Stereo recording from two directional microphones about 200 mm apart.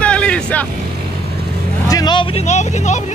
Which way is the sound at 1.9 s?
20° left (ahead or behind).